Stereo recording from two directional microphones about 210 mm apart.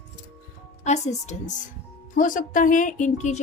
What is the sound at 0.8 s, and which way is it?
Speech, 35° left (ahead or behind).